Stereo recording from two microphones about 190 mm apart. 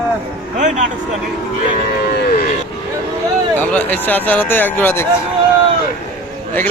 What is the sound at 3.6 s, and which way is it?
Speech, 10° left (ahead or behind).